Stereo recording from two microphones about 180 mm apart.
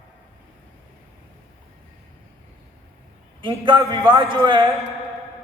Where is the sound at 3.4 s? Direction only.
25° right (ahead or behind).